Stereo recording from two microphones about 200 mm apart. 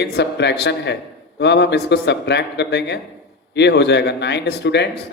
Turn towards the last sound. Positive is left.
turn(degrees=60)  # may be behind; listen again after turning